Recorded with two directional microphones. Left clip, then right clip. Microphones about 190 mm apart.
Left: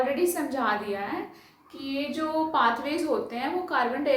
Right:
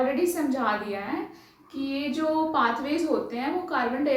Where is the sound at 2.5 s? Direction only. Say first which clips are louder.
Even; 30° left (ahead or behind).